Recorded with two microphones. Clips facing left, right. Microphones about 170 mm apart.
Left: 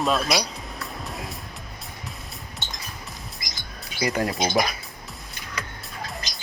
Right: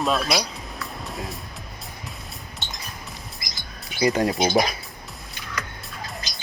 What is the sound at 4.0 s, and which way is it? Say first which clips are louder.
Speech: right 4 dB; 25° right (ahead or behind).